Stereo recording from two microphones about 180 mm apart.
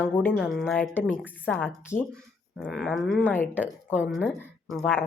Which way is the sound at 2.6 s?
Centre (ahead or behind).